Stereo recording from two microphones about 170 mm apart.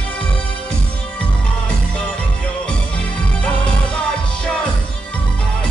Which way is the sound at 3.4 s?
5° left (ahead or behind).